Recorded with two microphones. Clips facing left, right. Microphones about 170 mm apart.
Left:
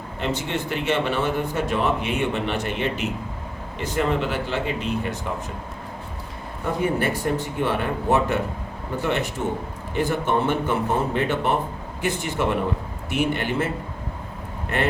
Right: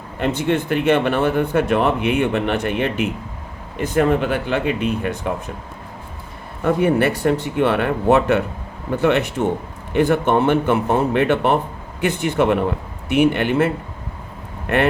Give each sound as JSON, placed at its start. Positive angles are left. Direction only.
{"t": 0.2, "sound": "speech", "side_deg": -55}
{"t": 6.7, "sound": "speech", "side_deg": -70}